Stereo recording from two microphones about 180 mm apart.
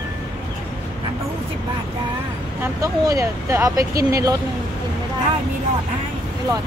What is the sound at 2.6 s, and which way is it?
Speech, 15° right (ahead or behind).